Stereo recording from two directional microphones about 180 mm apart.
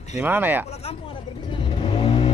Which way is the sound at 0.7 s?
35° left (ahead or behind).